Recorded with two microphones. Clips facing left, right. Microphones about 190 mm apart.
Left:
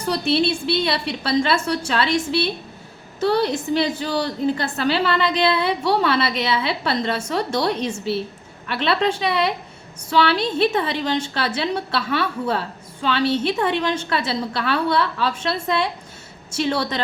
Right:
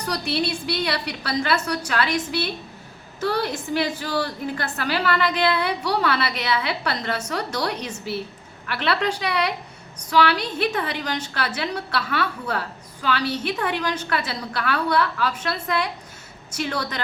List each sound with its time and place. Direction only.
0.0 s a woman's voice: 25° left (ahead or behind)